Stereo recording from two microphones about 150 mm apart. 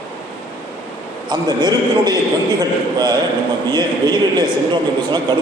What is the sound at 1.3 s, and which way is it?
Speech, 25° right (ahead or behind).